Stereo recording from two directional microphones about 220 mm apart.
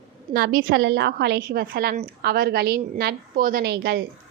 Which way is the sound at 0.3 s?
40° right (ahead or behind).